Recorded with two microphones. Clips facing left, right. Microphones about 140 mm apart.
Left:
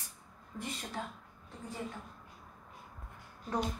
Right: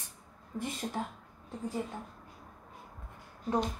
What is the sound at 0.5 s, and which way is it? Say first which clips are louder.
Speech: right 5 dB; 25° right (ahead or behind).